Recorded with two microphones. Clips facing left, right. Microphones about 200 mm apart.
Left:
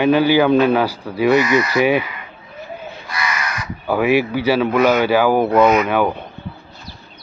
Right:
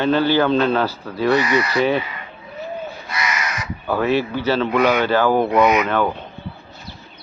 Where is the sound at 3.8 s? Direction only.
10° left (ahead or behind).